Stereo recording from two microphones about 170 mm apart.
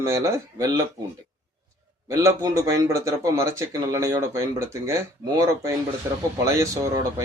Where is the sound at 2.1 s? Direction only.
20° right (ahead or behind).